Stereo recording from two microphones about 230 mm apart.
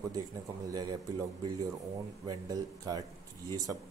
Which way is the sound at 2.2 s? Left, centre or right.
Centre.